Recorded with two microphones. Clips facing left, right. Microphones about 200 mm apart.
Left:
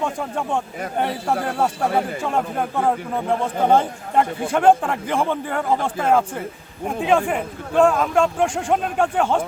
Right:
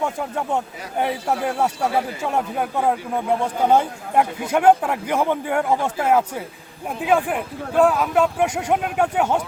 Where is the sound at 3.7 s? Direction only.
10° right (ahead or behind).